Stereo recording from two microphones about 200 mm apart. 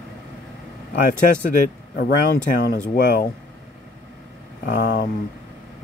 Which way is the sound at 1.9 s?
50° left (ahead or behind).